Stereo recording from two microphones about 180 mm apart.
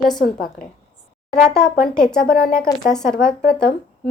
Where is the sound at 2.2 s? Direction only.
55° left (ahead or behind).